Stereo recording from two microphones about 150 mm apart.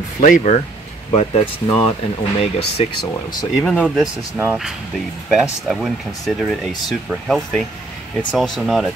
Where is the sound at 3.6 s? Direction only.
10° left (ahead or behind).